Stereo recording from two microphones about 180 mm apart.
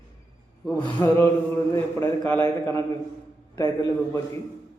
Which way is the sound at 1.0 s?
15° left (ahead or behind).